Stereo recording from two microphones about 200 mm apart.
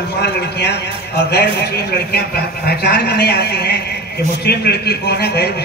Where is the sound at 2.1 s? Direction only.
50° left (ahead or behind).